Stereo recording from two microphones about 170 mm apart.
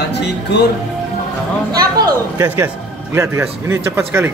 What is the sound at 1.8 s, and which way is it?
Speech, 20° right (ahead or behind).